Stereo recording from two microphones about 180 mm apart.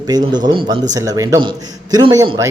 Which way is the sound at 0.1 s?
25° right (ahead or behind).